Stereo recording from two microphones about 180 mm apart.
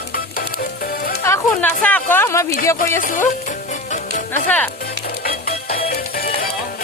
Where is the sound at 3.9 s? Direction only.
45° left (ahead or behind).